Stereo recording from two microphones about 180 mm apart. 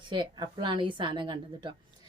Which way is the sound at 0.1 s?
25° right (ahead or behind).